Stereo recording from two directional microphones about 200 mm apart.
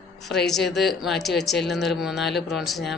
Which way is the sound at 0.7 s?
Centre (ahead or behind).